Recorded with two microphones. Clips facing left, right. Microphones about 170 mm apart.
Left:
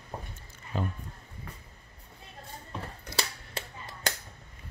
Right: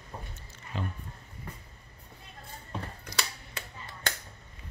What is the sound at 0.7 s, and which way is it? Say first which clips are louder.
Speech: left 3 dB; 45° left (ahead or behind).